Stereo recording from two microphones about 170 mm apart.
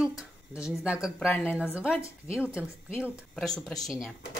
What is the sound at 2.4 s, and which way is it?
Speech, 5° right (ahead or behind).